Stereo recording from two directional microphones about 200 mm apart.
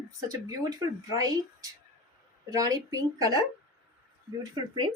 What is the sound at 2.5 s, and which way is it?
Speech, 15° right (ahead or behind).